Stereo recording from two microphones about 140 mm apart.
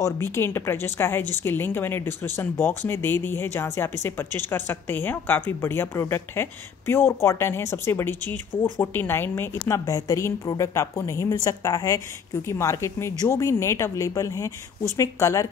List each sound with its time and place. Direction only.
0.0 s a woman's voice: 20° left (ahead or behind)